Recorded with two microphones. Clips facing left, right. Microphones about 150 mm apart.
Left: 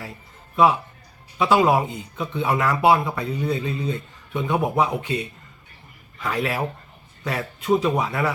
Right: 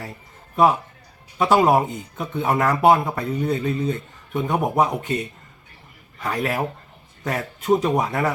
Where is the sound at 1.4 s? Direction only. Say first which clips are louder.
Right 1 dB; 45° right (ahead or behind).